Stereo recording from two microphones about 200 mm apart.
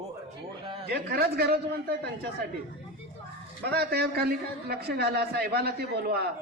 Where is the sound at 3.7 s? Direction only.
50° right (ahead or behind).